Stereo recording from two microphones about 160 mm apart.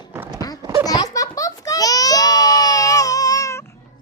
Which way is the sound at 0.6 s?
20° right (ahead or behind).